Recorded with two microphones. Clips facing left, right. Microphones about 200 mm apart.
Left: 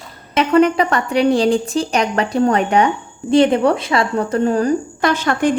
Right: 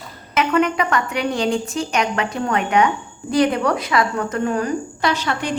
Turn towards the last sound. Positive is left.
turn(degrees=50)  # may be behind; listen again after turning